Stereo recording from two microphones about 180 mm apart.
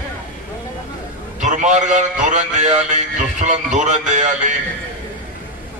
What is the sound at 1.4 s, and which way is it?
A man's voice, 40° right (ahead or behind).